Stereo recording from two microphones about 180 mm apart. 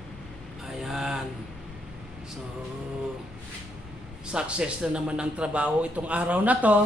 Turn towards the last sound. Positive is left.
turn(degrees=-10)  # may be behind; listen again after turning